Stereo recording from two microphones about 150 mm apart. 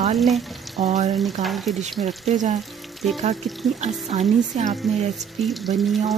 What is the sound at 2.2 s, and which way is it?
Frying, 55° right (ahead or behind).